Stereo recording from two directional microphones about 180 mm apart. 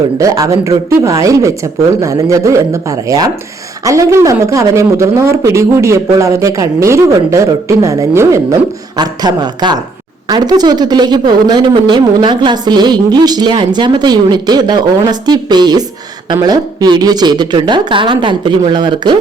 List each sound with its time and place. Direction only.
0.2 s speech: 20° right (ahead or behind)